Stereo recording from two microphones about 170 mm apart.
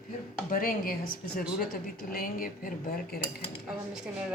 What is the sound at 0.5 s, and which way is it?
Speech, 55° left (ahead or behind).